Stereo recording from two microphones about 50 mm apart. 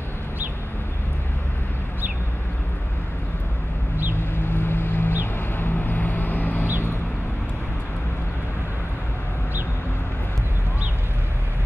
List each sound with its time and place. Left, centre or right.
4.2 s vehicle: left